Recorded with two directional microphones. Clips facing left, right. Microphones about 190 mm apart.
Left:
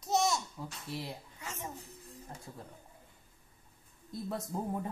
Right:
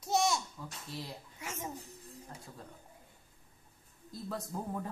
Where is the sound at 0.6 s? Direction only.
25° left (ahead or behind).